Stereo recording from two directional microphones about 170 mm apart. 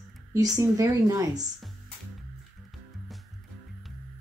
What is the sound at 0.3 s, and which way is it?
A woman's voice, 20° right (ahead or behind).